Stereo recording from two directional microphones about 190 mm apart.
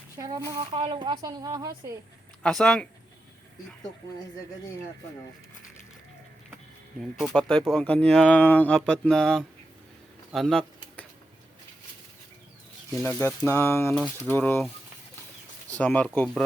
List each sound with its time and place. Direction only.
0.2 s speech: 20° right (ahead or behind)
0.5 s speech: 30° right (ahead or behind)
2.4 s speech: 5° left (ahead or behind)
7.0 s speech: centre (ahead or behind)
13.0 s speech: 10° left (ahead or behind)
15.8 s speech: 10° left (ahead or behind)